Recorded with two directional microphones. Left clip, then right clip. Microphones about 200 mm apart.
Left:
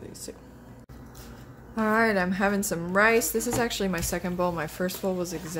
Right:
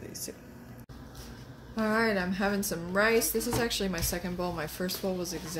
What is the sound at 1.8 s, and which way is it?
A woman's voice, 20° left (ahead or behind).